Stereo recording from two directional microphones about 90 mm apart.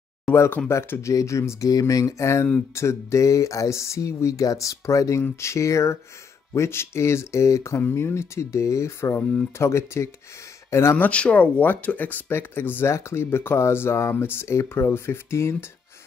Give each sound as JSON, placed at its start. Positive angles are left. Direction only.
{"t": 0.3, "sound": "speech", "side_deg": 25}
{"t": 11.0, "sound": "speech", "side_deg": 15}